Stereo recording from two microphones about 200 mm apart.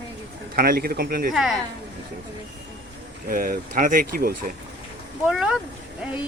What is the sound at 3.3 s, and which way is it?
Speech, 45° right (ahead or behind).